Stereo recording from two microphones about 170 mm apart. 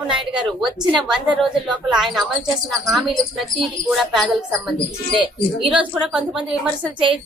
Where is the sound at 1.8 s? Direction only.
5° right (ahead or behind).